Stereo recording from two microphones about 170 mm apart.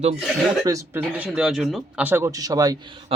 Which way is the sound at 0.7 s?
10° right (ahead or behind).